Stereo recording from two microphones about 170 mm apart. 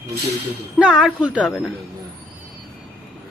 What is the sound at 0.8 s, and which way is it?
Speech, 5° right (ahead or behind).